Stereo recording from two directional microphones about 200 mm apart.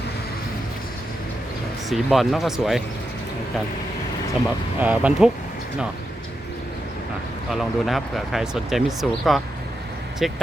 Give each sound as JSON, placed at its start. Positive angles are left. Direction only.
{"t": 1.9, "sound": "speech", "side_deg": 0}
{"t": 4.8, "sound": "speech", "side_deg": -5}
{"t": 7.5, "sound": "speech", "side_deg": 0}